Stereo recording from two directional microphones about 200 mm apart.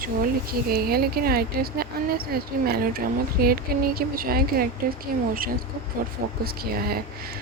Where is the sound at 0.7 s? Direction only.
50° right (ahead or behind).